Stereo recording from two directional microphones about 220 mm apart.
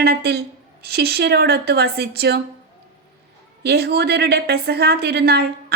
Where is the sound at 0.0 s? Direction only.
45° right (ahead or behind).